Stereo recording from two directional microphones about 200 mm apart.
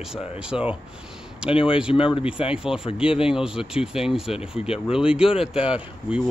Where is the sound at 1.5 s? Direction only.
25° left (ahead or behind).